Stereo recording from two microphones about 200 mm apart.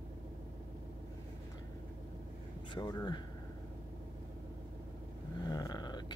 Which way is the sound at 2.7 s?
20° left (ahead or behind).